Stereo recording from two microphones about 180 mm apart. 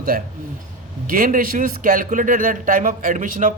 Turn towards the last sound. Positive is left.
turn(degrees=-45)  # may be behind; listen again after turning